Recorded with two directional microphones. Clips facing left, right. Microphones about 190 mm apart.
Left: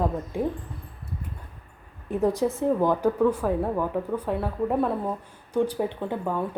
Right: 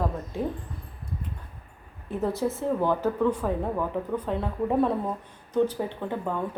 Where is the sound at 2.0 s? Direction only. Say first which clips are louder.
Left 4 dB; 15° left (ahead or behind).